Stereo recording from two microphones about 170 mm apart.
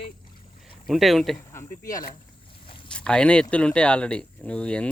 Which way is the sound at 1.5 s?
20° left (ahead or behind).